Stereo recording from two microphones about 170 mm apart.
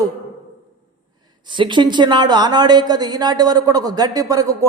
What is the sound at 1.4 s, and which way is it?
A woman's voice, 30° right (ahead or behind).